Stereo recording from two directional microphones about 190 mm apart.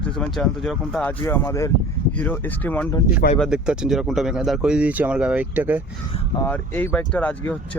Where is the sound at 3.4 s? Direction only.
5° right (ahead or behind).